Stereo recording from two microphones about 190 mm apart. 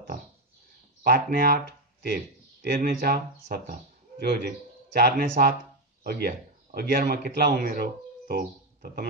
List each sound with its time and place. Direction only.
1.0 s speech: 60° right (ahead or behind)
4.2 s a man's voice: 55° right (ahead or behind)